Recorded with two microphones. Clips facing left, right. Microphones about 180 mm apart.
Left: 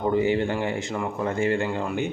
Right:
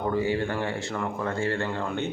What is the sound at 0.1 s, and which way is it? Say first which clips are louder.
Speech: left 4 dB; 20° left (ahead or behind).